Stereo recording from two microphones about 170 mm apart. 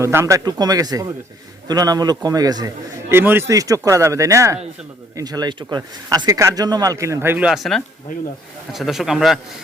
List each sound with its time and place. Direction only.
0.0 s a man's voice: 15° right (ahead or behind)